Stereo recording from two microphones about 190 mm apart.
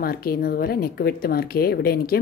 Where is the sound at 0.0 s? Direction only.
50° left (ahead or behind).